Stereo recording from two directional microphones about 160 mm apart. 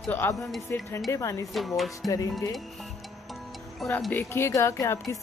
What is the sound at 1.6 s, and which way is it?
Music, centre (ahead or behind).